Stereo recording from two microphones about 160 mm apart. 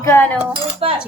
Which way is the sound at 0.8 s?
35° right (ahead or behind).